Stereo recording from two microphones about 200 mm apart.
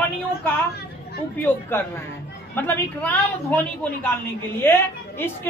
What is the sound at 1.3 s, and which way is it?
A woman's voice, 10° left (ahead or behind).